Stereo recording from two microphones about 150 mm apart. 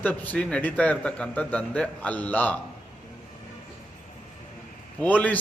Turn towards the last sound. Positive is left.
turn(degrees=10)  # may be behind; listen again after turning